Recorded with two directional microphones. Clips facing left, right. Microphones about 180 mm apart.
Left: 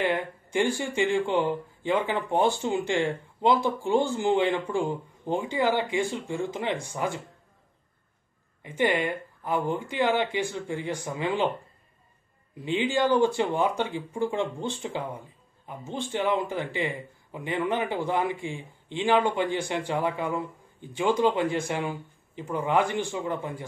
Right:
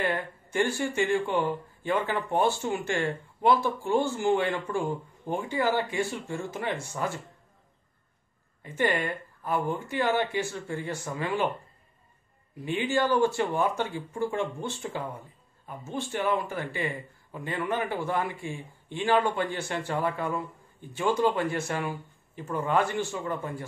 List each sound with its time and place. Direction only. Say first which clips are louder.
0.0 s speech: left 3 dB; 15° left (ahead or behind)
8.6 s speech: left 2 dB; 15° left (ahead or behind)
12.6 s speech: left 2 dB; 15° left (ahead or behind)